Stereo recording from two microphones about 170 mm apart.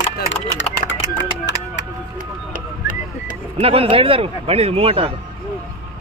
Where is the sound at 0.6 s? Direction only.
90° left.